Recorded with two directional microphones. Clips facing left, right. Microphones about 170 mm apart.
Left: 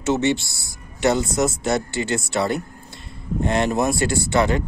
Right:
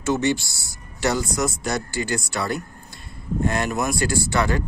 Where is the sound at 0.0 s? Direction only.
25° left (ahead or behind).